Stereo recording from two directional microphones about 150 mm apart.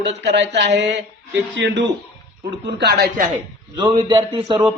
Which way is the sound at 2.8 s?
90° right.